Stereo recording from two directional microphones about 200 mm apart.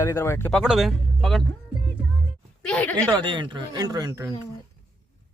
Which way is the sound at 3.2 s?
25° right (ahead or behind).